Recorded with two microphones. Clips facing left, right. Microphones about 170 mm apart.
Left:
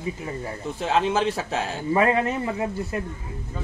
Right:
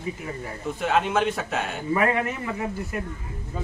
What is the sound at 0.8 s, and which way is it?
A man's voice, 30° left (ahead or behind).